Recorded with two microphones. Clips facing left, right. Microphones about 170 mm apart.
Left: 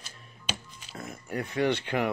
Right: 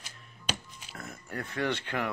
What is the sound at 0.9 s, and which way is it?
Speech, 20° left (ahead or behind).